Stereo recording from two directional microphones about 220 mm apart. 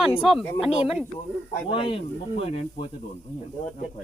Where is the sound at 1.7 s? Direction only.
25° left (ahead or behind).